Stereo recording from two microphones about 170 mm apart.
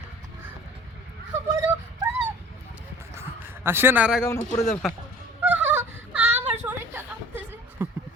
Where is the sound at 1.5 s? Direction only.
15° right (ahead or behind).